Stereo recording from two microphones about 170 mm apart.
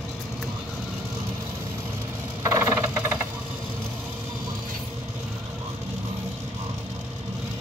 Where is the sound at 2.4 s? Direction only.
15° right (ahead or behind).